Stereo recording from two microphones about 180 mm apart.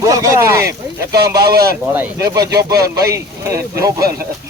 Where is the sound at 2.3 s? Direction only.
20° right (ahead or behind).